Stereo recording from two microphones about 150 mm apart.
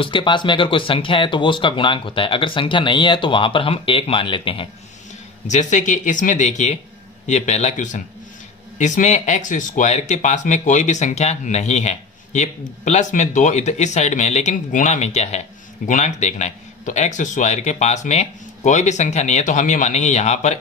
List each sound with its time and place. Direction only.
0.0 s speech: 35° left (ahead or behind)
5.5 s speech: 55° left (ahead or behind)